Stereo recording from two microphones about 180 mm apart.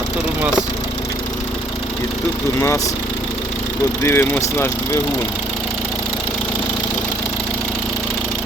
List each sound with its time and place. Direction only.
2.6 s speech: 15° left (ahead or behind)
4.0 s speech: 15° left (ahead or behind)